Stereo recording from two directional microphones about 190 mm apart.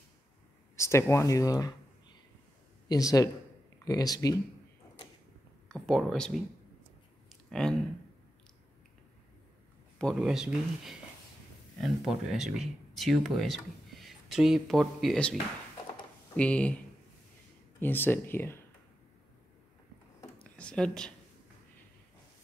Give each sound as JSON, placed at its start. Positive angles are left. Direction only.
{"t": 0.7, "sound": "speech", "side_deg": 15}
{"t": 2.9, "sound": "speech", "side_deg": 20}
{"t": 5.7, "sound": "speech", "side_deg": 0}
{"t": 7.4, "sound": "speech", "side_deg": 0}
{"t": 9.9, "sound": "speech", "side_deg": 0}
{"t": 16.3, "sound": "speech", "side_deg": 5}
{"t": 17.7, "sound": "speech", "side_deg": 10}
{"t": 20.3, "sound": "a sound", "side_deg": 5}